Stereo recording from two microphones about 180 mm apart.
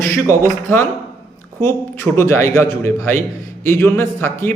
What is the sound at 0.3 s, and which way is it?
A man's voice, 15° left (ahead or behind).